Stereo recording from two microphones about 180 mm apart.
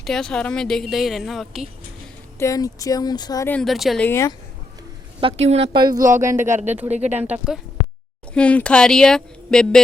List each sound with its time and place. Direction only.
0.0 s a woman's voice: 5° left (ahead or behind)
2.4 s speech: 20° left (ahead or behind)
3.5 s a woman's voice: centre (ahead or behind)
4.0 s speech: 15° left (ahead or behind)
5.2 s speech: 35° right (ahead or behind); by 7.6 s 5° right (ahead or behind)
8.3 s a woman's voice: 5° left (ahead or behind)